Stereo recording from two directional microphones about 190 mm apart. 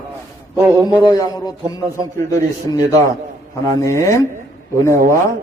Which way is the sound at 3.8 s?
15° left (ahead or behind).